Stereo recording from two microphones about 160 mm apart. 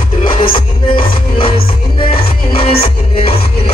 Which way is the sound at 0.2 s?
30° left (ahead or behind).